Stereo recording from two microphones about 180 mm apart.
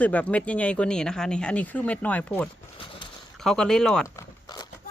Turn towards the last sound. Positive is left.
turn(degrees=20)  # may be behind; listen again after turning